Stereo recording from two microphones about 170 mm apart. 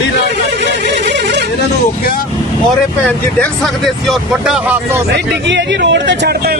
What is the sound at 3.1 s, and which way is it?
Speech, 5° left (ahead or behind).